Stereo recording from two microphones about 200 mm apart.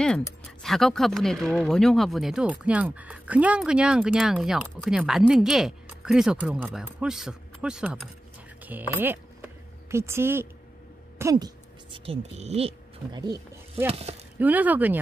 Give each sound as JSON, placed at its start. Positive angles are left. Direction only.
{"t": 0.6, "sound": "speech", "side_deg": 0}
{"t": 14.4, "sound": "speech", "side_deg": -10}